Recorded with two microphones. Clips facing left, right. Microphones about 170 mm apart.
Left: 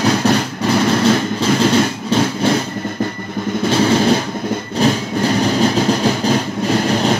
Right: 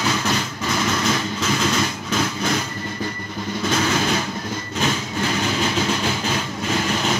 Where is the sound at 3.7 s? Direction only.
30° left (ahead or behind).